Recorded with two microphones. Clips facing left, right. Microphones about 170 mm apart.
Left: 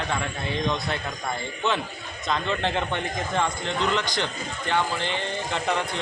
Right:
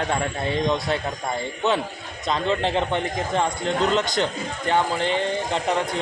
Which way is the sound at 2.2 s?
35° right (ahead or behind).